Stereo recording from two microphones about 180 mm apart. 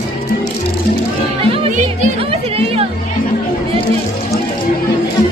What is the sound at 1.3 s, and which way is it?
Music, 30° right (ahead or behind).